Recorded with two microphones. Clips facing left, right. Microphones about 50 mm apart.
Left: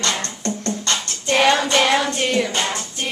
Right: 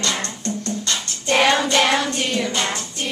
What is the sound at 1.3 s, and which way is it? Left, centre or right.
Child singing, centre.